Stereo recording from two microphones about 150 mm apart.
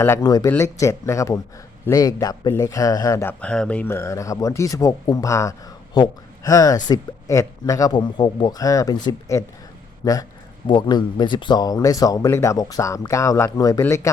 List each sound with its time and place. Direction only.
0.0 s speech: 20° left (ahead or behind)
3.4 s a man's voice: 5° left (ahead or behind)